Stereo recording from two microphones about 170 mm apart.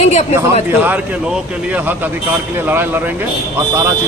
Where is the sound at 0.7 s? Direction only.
10° right (ahead or behind).